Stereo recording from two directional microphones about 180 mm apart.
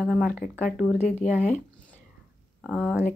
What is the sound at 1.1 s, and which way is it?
Speech, 45° left (ahead or behind).